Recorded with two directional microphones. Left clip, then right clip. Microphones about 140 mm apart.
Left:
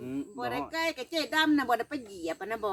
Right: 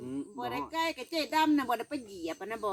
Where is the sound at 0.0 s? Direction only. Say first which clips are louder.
Left 2 dB; 35° left (ahead or behind).